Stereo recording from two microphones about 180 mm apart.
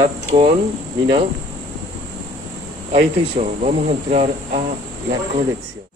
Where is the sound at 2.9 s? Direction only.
35° right (ahead or behind).